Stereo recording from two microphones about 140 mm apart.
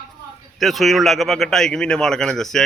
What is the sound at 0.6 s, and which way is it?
Speech, centre (ahead or behind).